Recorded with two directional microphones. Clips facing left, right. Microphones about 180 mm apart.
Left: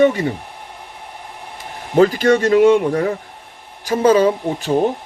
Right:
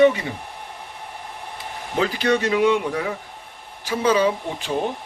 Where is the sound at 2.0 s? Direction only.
45° left (ahead or behind).